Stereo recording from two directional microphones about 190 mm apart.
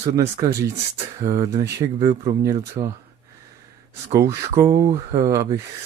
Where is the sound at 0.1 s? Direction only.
15° right (ahead or behind).